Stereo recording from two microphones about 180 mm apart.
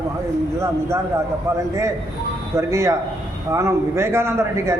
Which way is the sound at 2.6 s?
15° right (ahead or behind).